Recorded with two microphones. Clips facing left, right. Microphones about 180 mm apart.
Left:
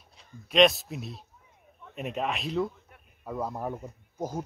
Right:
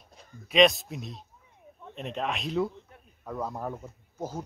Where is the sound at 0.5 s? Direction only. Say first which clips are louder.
Even; centre (ahead or behind).